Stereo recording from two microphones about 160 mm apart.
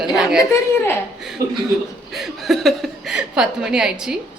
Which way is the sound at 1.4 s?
20° right (ahead or behind).